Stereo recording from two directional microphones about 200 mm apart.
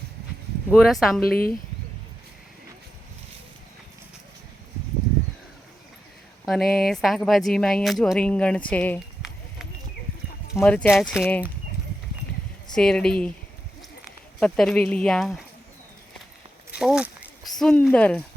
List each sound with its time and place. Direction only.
0.7 s speech: centre (ahead or behind)
1.3 s speech: 45° left (ahead or behind)
6.4 s speech: centre (ahead or behind)
10.5 s speech: 5° left (ahead or behind)
12.7 s speech: 5° left (ahead or behind)
14.3 s speech: 5° left (ahead or behind)
16.7 s speech: 5° right (ahead or behind)